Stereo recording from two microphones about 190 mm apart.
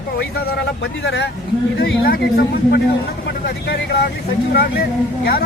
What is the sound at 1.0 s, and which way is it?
Speech, 65° left (ahead or behind).